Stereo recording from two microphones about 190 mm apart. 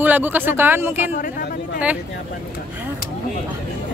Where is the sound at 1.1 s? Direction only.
45° left (ahead or behind).